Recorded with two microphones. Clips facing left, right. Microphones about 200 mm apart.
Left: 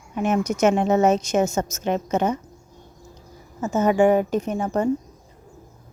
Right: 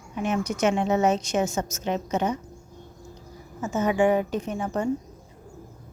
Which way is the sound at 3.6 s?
40° left (ahead or behind).